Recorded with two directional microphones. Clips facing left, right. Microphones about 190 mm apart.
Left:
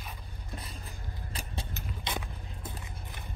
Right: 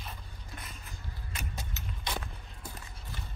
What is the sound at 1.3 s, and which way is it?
Keys jangling, 35° left (ahead or behind).